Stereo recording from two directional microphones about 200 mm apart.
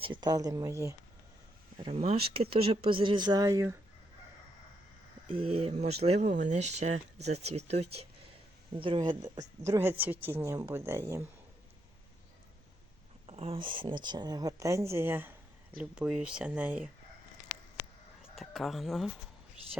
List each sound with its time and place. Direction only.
0.0 s a woman's voice: 25° right (ahead or behind)
1.8 s speech: 30° right (ahead or behind)
5.3 s a woman's voice: 30° right (ahead or behind)
13.2 s speech: 30° right (ahead or behind); by 16.9 s 5° right (ahead or behind)
18.3 s speech: centre (ahead or behind)